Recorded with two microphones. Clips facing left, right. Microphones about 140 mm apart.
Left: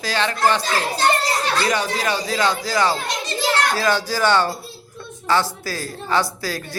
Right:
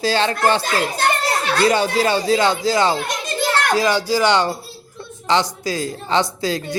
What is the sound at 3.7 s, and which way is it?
Speech, 15° right (ahead or behind).